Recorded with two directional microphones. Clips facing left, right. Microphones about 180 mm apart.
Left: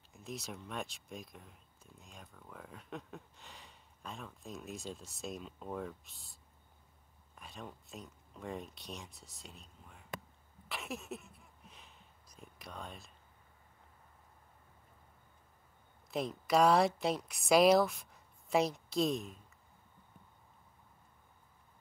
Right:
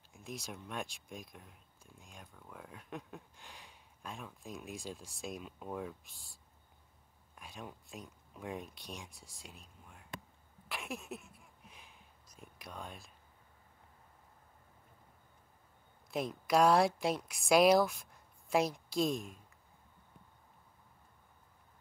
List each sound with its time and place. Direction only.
0.1 s speech: centre (ahead or behind)
7.3 s speech: centre (ahead or behind)
10.7 s a sound: centre (ahead or behind)
12.4 s speech: centre (ahead or behind)
16.1 s speech: centre (ahead or behind)